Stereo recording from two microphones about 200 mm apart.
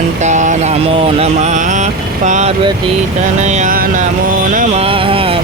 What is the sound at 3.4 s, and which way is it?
Speech, 35° right (ahead or behind).